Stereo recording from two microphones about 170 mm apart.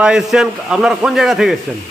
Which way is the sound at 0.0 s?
Centre (ahead or behind).